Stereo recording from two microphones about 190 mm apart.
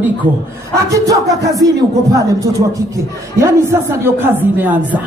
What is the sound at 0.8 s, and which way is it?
Speech, 15° right (ahead or behind).